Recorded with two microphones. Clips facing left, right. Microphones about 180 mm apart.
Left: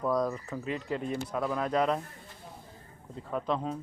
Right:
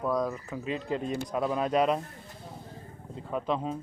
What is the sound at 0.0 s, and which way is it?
Speech, centre (ahead or behind).